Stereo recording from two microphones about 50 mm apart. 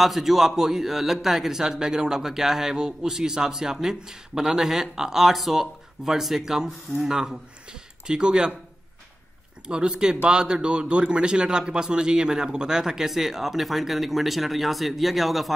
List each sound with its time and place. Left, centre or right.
0.0 s speech: centre
9.7 s speech: centre